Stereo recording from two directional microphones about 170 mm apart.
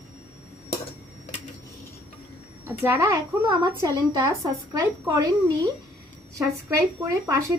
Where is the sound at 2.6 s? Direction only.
15° right (ahead or behind).